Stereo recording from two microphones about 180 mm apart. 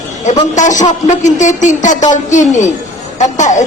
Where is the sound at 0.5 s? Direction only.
45° left (ahead or behind).